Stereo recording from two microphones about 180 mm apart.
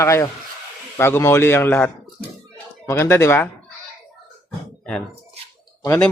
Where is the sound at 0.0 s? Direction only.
15° left (ahead or behind).